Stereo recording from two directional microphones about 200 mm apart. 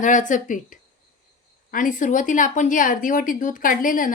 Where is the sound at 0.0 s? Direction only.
40° left (ahead or behind).